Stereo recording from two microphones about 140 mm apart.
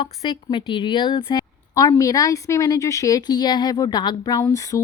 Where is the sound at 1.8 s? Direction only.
25° left (ahead or behind).